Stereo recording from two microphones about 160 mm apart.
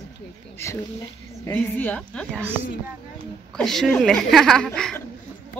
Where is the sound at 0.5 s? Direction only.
20° left (ahead or behind).